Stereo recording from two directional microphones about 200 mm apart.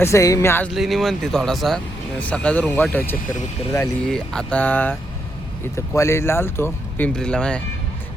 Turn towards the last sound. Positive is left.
turn(degrees=5)  # may be behind; listen again after turning